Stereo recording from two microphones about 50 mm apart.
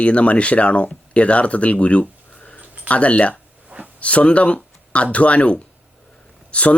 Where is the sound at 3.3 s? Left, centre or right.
Right.